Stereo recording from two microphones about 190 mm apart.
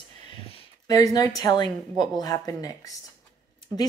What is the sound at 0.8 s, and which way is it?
A woman's voice, 20° left (ahead or behind).